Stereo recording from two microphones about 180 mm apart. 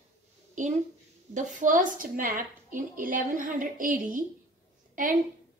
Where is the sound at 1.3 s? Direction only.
45° right (ahead or behind).